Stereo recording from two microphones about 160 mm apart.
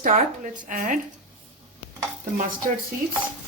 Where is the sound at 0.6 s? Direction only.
55° right (ahead or behind).